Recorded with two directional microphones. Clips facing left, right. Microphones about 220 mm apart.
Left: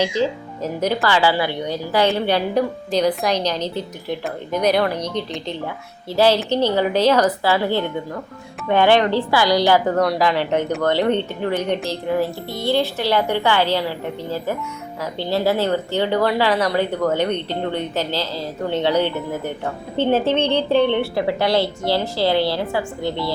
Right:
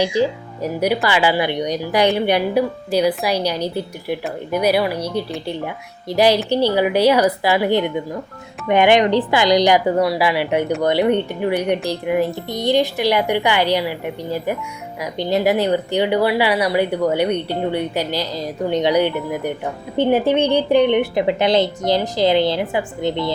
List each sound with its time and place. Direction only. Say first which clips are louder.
0.0 s a woman's voice: right 2 dB; 15° right (ahead or behind)